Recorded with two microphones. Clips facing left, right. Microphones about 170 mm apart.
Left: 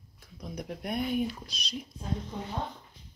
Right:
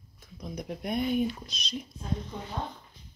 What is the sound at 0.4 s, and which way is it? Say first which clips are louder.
Speech: right 1 dB; 5° left (ahead or behind).